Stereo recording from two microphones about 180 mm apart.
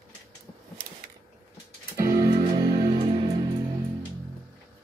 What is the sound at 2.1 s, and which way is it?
Music, 55° right (ahead or behind).